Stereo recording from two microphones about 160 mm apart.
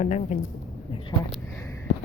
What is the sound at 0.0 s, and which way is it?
Speech, 50° left (ahead or behind).